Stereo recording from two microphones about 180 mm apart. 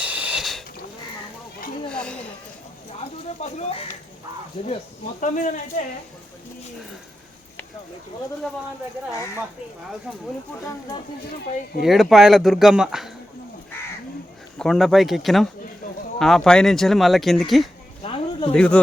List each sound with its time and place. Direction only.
0.0 s mechanisms: 10° right (ahead or behind)
1.9 s a sound: 5° left (ahead or behind)
3.0 s speech: 35° left (ahead or behind)
5.2 s speech: 45° left (ahead or behind)
11.8 s speech: centre (ahead or behind)
14.6 s speech: centre (ahead or behind)
18.0 s a sound: 30° left (ahead or behind)
18.5 s speech: 5° left (ahead or behind)